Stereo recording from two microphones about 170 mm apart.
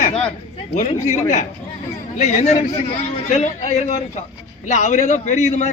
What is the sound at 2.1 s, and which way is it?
A man's voice, 40° left (ahead or behind).